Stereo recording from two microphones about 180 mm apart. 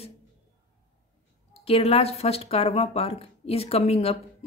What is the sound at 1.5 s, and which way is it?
Speech, 30° left (ahead or behind).